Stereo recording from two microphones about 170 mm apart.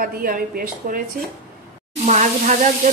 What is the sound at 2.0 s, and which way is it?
Speech, 45° right (ahead or behind).